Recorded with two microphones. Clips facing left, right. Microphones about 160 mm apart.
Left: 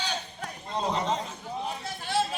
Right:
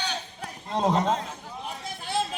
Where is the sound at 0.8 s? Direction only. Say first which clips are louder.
Right 5 dB; 50° right (ahead or behind).